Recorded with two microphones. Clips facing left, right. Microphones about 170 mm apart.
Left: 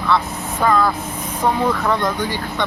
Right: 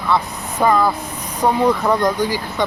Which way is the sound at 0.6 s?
15° right (ahead or behind).